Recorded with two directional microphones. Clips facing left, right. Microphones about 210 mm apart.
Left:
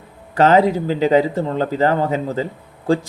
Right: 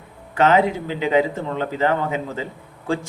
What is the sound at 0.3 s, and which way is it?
Speech, 35° left (ahead or behind).